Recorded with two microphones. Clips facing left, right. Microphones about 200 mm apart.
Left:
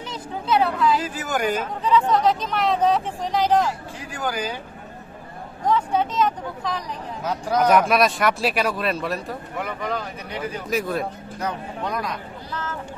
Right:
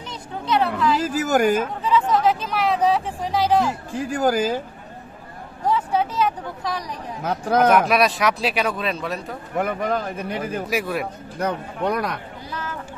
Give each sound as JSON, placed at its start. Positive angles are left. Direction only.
{"t": 0.1, "sound": "a sound", "side_deg": 5}
{"t": 1.0, "sound": "speech", "side_deg": -45}
{"t": 1.8, "sound": "speech", "side_deg": -5}
{"t": 3.9, "sound": "speech", "side_deg": -45}
{"t": 5.7, "sound": "speech", "side_deg": -10}
{"t": 7.2, "sound": "speech", "side_deg": -55}
{"t": 7.7, "sound": "speech", "side_deg": 0}
{"t": 9.6, "sound": "speech", "side_deg": -50}
{"t": 10.7, "sound": "speech", "side_deg": -10}
{"t": 11.3, "sound": "speech", "side_deg": -60}